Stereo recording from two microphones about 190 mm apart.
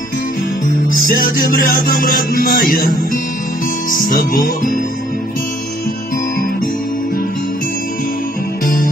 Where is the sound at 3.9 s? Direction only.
45° left (ahead or behind).